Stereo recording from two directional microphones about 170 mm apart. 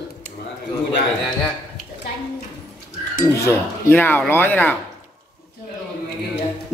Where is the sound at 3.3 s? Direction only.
15° left (ahead or behind).